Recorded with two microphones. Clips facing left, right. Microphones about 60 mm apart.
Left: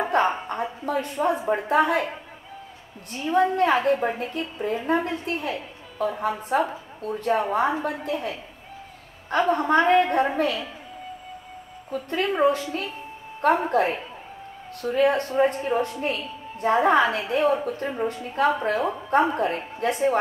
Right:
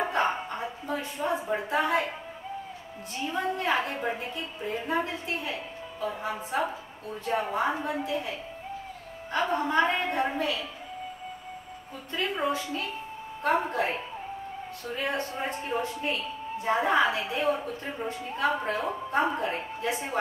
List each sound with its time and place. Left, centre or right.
0.1 s a sound: left
1.7 s a woman's voice: left
3.3 s a woman's voice: left
5.9 s a woman's voice: left
7.2 s a woman's voice: left
9.3 s a woman's voice: left
12.1 s a woman's voice: left